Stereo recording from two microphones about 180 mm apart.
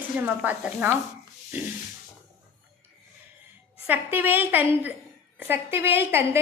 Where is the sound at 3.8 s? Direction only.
10° right (ahead or behind).